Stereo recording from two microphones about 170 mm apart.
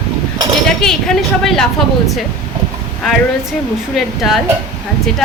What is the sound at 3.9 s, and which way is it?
Speech, centre (ahead or behind).